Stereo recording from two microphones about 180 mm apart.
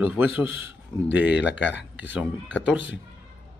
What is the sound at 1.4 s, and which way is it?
Speech, 80° left.